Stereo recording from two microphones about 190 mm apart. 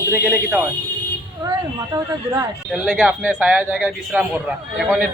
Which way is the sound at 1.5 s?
15° right (ahead or behind).